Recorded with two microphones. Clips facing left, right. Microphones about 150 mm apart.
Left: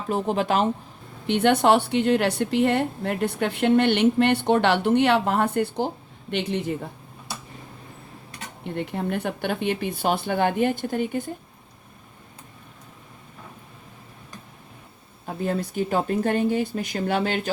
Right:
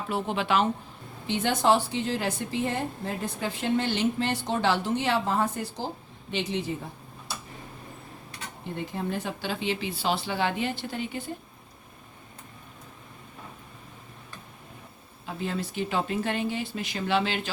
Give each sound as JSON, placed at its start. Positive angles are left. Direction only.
{"t": 0.1, "sound": "speech", "side_deg": 40}
{"t": 1.3, "sound": "a woman's voice", "side_deg": 60}
{"t": 8.7, "sound": "speech", "side_deg": 65}
{"t": 15.3, "sound": "speech", "side_deg": 50}